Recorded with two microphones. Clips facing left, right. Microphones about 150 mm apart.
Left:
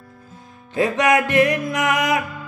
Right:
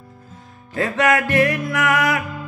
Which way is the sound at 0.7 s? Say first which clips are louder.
Left 1 dB; 15° left (ahead or behind).